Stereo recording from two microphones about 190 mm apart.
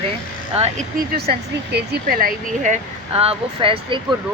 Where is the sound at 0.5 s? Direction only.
35° right (ahead or behind).